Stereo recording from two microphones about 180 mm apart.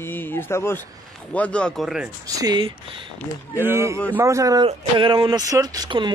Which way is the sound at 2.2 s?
20° right (ahead or behind).